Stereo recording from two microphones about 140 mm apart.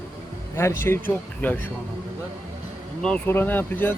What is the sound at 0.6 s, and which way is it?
Speech, 20° left (ahead or behind).